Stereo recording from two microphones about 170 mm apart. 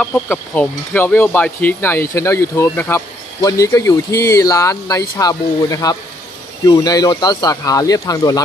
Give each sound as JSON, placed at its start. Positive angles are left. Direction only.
{"t": 0.0, "sound": "speech", "side_deg": 10}